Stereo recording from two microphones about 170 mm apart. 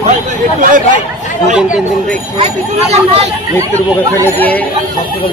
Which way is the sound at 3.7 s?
10° left (ahead or behind).